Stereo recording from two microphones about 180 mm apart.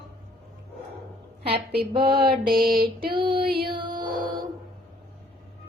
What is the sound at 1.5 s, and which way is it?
Mantra, 60° right (ahead or behind).